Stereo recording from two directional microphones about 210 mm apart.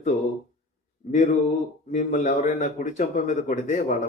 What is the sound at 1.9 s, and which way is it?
Speech, 35° left (ahead or behind).